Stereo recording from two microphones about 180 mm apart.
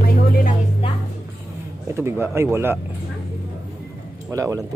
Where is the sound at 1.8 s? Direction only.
15° right (ahead or behind).